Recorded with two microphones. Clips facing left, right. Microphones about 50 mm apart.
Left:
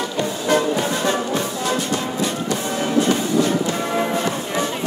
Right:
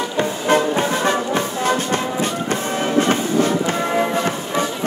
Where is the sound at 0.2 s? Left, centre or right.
Right.